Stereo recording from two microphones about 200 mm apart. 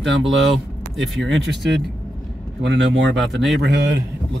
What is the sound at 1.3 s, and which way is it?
Speech, 60° right (ahead or behind).